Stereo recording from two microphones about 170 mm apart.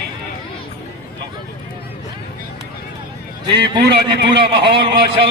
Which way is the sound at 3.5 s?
80° right.